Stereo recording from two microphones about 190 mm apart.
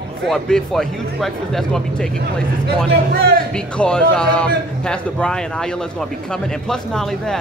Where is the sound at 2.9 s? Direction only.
55° right (ahead or behind).